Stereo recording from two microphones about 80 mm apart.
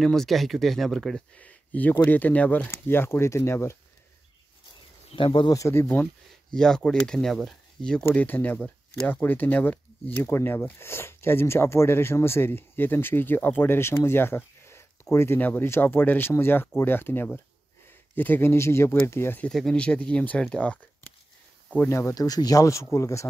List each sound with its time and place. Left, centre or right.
0.0 s speech: centre
1.3 s speech: centre
2.7 s speech: left
5.1 s speech: left
5.5 s speech: left
6.5 s speech: centre
8.0 s speech: left
10.2 s speech: left
18.5 s speech: left
19.5 s speech: centre
21.8 s speech: left
22.1 s speech: left